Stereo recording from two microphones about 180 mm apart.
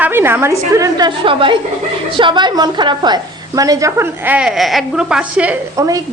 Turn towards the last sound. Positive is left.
turn(degrees=-5)  # may be behind; listen again after turning